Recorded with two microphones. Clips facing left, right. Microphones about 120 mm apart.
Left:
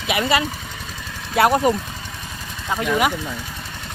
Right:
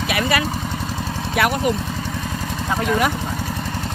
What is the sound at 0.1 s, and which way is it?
Speech, 20° left (ahead or behind).